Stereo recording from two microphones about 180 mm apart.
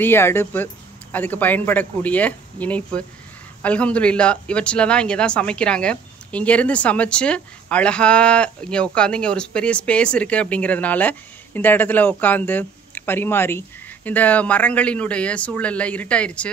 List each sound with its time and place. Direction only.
0.0 s speech: 10° left (ahead or behind)